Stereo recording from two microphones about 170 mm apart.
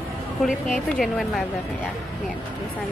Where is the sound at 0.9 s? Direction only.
Centre (ahead or behind).